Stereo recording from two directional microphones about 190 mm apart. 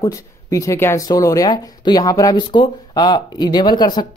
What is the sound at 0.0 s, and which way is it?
Speech, 15° left (ahead or behind).